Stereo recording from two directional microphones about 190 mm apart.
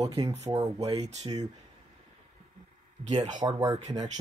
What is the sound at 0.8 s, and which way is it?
Speech, 30° right (ahead or behind).